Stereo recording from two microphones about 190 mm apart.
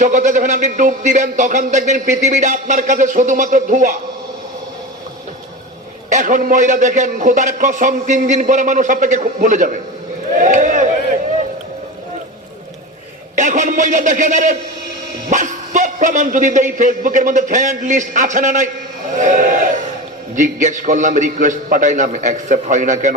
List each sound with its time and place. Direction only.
0.0 s a man's voice: 40° right (ahead or behind)
6.1 s a man's voice: 40° right (ahead or behind)
10.3 s a sound: 40° right (ahead or behind)
13.3 s a man's voice: 40° right (ahead or behind)
19.2 s a sound: 45° right (ahead or behind)
20.3 s a man's voice: 40° right (ahead or behind)